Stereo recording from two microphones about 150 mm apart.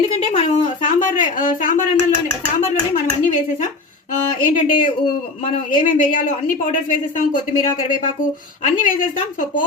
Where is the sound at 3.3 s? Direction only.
60° left (ahead or behind).